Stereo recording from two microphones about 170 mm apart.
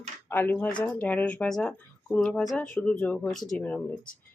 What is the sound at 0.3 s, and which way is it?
Speech, 10° left (ahead or behind).